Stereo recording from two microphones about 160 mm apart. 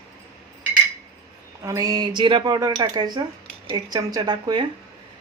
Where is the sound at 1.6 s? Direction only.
20° right (ahead or behind).